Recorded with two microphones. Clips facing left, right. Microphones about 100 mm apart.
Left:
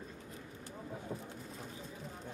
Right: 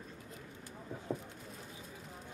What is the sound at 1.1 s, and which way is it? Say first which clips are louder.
Pigeon: right 6 dB; centre (ahead or behind).